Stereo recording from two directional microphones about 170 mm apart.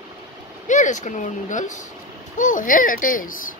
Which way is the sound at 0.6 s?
45° left (ahead or behind).